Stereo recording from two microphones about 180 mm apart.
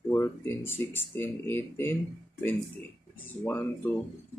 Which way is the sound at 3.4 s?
10° left (ahead or behind).